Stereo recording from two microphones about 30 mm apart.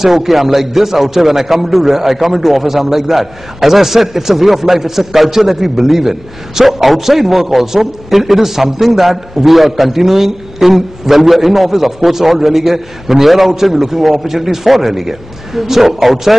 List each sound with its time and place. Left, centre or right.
0.0 s a man's voice: centre